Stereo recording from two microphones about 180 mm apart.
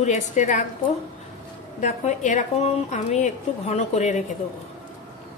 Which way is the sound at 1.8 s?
40° left (ahead or behind).